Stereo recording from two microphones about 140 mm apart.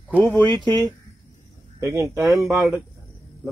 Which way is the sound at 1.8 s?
20° right (ahead or behind).